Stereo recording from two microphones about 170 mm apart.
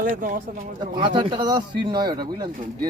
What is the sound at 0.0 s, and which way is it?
Speech, 55° right (ahead or behind).